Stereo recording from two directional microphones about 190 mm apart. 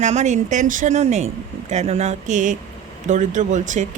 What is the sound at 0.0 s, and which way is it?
A woman's voice, 40° right (ahead or behind).